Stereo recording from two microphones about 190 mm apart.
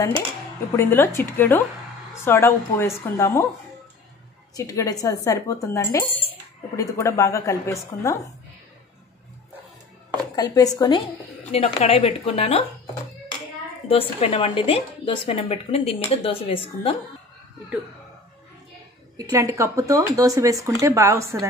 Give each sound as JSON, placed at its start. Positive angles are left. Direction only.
{"t": 0.7, "sound": "speech", "side_deg": 15}
{"t": 4.6, "sound": "speech", "side_deg": 20}
{"t": 10.3, "sound": "speech", "side_deg": 20}
{"t": 11.5, "sound": "a woman's voice", "side_deg": 30}
{"t": 13.8, "sound": "a woman's voice", "side_deg": 30}
{"t": 19.1, "sound": "speech", "side_deg": -20}